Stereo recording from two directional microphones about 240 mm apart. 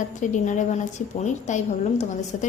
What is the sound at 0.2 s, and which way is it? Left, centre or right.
A woman's voice, left.